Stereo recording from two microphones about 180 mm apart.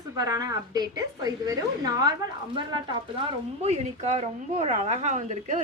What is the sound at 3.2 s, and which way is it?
A woman's voice, 35° right (ahead or behind).